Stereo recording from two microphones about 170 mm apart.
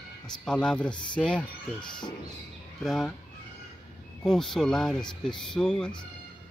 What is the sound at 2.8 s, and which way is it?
Speech, centre (ahead or behind).